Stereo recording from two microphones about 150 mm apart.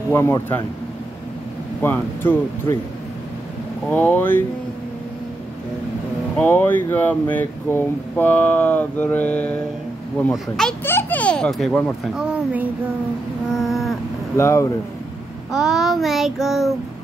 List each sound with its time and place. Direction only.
0.1 s speech: 15° left (ahead or behind)
1.8 s speech: 15° left (ahead or behind)
3.9 s speech: 10° left (ahead or behind)
6.3 s speech: 15° left (ahead or behind)
10.3 s child singing: 5° left (ahead or behind)
10.8 s speech: 15° left (ahead or behind); by 12.6 s 5° right (ahead or behind)
13.5 s a sound: centre (ahead or behind)
14.3 s speech: 20° left (ahead or behind)
15.5 s child singing: 5° right (ahead or behind)